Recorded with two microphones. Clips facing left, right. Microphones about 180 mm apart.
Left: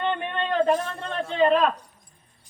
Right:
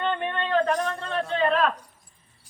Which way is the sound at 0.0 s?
15° left (ahead or behind).